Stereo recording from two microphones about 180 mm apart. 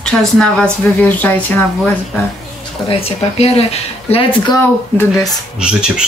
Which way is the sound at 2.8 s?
35° left (ahead or behind).